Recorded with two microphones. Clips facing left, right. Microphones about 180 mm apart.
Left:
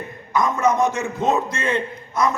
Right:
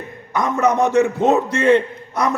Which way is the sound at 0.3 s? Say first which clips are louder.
Right 2 dB; 65° right (ahead or behind).